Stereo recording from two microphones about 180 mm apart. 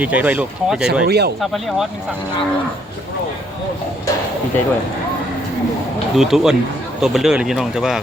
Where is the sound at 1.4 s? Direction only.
Centre (ahead or behind).